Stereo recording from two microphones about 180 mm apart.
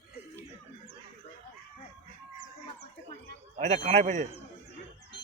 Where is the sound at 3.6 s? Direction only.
45° right (ahead or behind).